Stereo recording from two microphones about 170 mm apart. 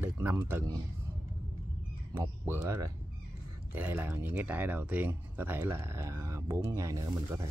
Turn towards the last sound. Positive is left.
turn(degrees=-20)  # may be behind; listen again after turning